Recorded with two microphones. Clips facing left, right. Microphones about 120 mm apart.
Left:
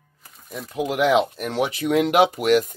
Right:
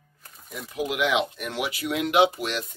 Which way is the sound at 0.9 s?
40° left (ahead or behind).